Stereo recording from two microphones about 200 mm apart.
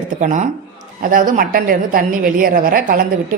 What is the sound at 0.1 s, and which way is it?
A woman's voice, 40° right (ahead or behind).